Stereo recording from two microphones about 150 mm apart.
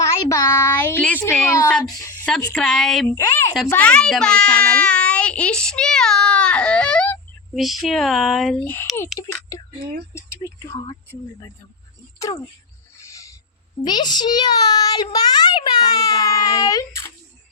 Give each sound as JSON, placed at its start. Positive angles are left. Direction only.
{"t": 0.0, "sound": "a sound", "side_deg": 20}
{"t": 2.5, "sound": "a child's voice", "side_deg": 5}
{"t": 3.1, "sound": "a child's voice", "side_deg": 15}
{"t": 8.6, "sound": "a child's voice", "side_deg": 15}
{"t": 13.0, "sound": "owl", "side_deg": 20}
{"t": 13.8, "sound": "a child's voice", "side_deg": 30}